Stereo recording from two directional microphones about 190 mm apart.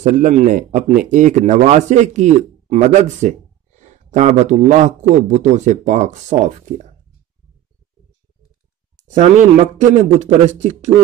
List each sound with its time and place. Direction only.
0.0 s speech: 40° right (ahead or behind)
8.9 s speech: 40° right (ahead or behind)